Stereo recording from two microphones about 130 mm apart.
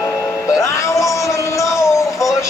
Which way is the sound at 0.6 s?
25° left (ahead or behind).